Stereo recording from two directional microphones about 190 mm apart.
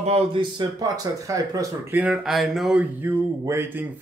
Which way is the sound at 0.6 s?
20° right (ahead or behind).